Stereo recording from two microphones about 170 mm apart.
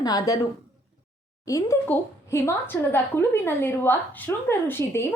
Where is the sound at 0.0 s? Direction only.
20° left (ahead or behind).